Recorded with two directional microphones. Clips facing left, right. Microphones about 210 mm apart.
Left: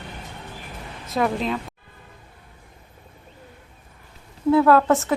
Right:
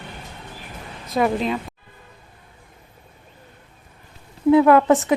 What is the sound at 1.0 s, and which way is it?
Speech, centre (ahead or behind).